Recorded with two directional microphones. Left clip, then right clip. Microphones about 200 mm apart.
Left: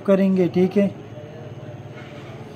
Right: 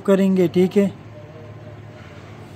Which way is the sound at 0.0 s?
40° right (ahead or behind).